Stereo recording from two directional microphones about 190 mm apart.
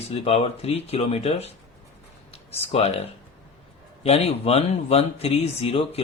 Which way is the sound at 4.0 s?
35° left (ahead or behind).